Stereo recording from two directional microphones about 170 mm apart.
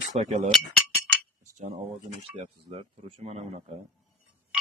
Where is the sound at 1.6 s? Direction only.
40° right (ahead or behind).